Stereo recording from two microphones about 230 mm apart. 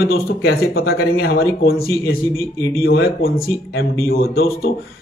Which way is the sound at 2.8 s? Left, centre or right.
Left.